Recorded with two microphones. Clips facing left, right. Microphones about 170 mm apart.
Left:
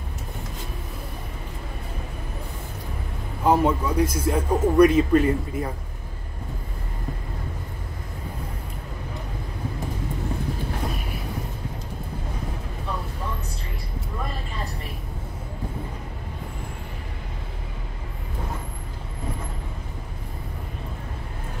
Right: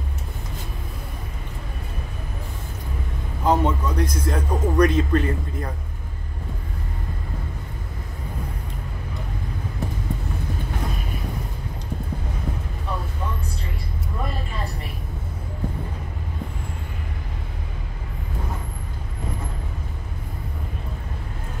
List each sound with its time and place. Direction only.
3.4 s a man's voice: 10° left (ahead or behind)